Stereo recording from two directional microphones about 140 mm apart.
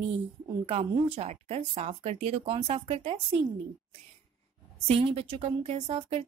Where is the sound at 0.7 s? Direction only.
50° right (ahead or behind).